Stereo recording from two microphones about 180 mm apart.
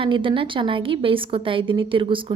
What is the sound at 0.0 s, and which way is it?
A woman's voice, 30° right (ahead or behind).